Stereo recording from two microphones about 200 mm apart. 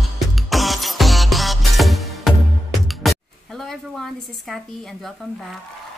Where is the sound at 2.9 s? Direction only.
Centre (ahead or behind).